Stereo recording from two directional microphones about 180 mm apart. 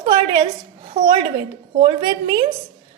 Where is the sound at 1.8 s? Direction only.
30° right (ahead or behind).